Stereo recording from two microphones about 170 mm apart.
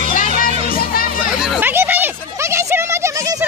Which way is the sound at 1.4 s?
10° right (ahead or behind).